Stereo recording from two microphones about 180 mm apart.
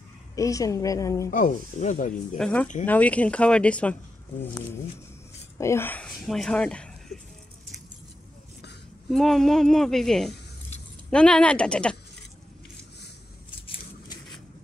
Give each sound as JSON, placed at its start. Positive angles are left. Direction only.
{"t": 0.4, "sound": "speech", "side_deg": 20}
{"t": 1.3, "sound": "speech", "side_deg": 45}
{"t": 2.3, "sound": "a woman's voice", "side_deg": 5}
{"t": 5.6, "sound": "speech", "side_deg": 15}
{"t": 9.1, "sound": "a woman's voice", "side_deg": 0}